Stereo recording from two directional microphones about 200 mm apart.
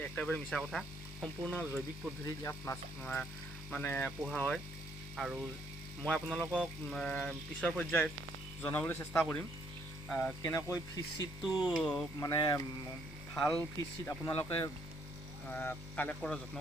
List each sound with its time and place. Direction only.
0.0 s speech: 5° left (ahead or behind)
3.0 s speech: 5° left (ahead or behind)
10.5 s speech: 15° left (ahead or behind)
11.4 s speech: centre (ahead or behind)
12.2 s speech: 20° left (ahead or behind)
13.3 s speech: 5° left (ahead or behind)
15.4 s speech: 10° left (ahead or behind)